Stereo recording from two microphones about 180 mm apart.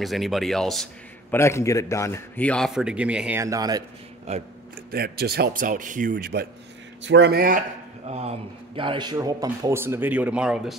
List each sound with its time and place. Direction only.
0.0 s speech: centre (ahead or behind)
1.3 s speech: 15° left (ahead or behind); by 3.8 s 20° right (ahead or behind)
4.3 s speech: 35° right (ahead or behind)
4.9 s a man's voice: 60° right (ahead or behind)
7.0 s speech: 80° right; by 7.6 s 55° right (ahead or behind)
8.1 s speech: 35° right (ahead or behind); by 10.8 s 5° right (ahead or behind)